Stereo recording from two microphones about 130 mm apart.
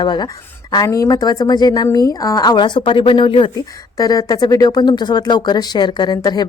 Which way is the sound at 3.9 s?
25° left (ahead or behind).